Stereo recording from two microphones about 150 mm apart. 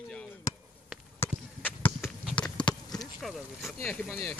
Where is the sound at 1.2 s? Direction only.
10° left (ahead or behind).